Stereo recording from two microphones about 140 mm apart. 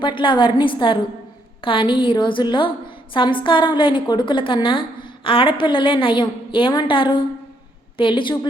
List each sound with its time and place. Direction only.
0.0 s a woman's voice: 35° left (ahead or behind)